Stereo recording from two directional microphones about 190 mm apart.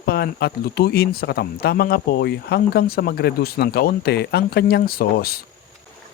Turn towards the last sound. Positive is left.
turn(degrees=55)  # may be behind; listen again after turning